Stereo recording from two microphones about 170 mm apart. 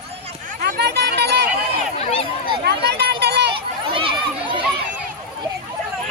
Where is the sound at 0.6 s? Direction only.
75° right (ahead or behind).